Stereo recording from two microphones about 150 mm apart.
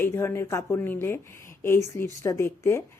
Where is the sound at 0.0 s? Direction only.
15° left (ahead or behind).